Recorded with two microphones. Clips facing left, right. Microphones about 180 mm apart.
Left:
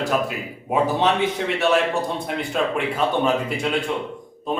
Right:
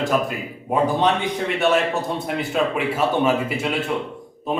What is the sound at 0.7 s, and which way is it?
A man's voice, centre (ahead or behind).